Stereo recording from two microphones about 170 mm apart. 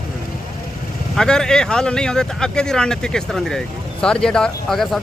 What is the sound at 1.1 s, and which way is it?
Speech, 5° left (ahead or behind).